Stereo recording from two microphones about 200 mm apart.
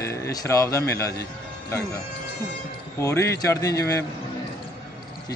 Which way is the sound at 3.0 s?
15° left (ahead or behind).